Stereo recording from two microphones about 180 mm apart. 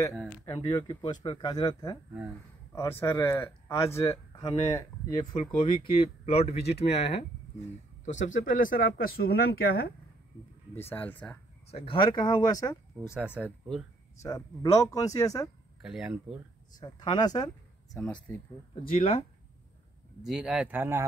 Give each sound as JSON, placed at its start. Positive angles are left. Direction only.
{"t": 0.5, "sound": "speech", "side_deg": 25}
{"t": 10.7, "sound": "speech", "side_deg": 10}
{"t": 11.7, "sound": "speech", "side_deg": 30}
{"t": 13.1, "sound": "speech", "side_deg": -5}
{"t": 14.2, "sound": "speech", "side_deg": 20}
{"t": 15.8, "sound": "speech", "side_deg": -5}
{"t": 16.8, "sound": "speech", "side_deg": 25}
{"t": 18.9, "sound": "speech", "side_deg": 35}
{"t": 20.2, "sound": "speech", "side_deg": -5}